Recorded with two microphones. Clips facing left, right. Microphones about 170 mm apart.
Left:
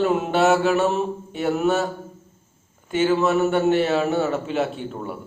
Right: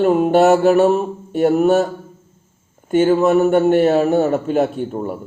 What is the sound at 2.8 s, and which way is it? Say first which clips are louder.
Speech: right 6 dB; 45° right (ahead or behind).